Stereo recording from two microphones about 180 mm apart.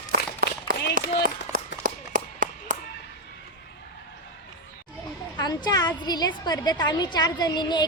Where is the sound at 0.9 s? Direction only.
50° right (ahead or behind).